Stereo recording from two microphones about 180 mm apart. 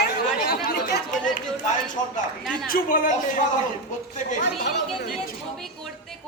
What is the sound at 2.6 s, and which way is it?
Speech, 50° left (ahead or behind).